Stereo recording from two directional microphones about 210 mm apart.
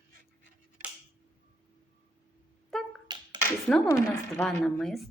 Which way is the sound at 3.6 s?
5° left (ahead or behind).